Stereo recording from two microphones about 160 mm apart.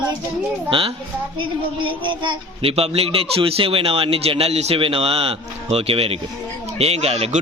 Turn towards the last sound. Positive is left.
turn(degrees=-40)  # may be behind; listen again after turning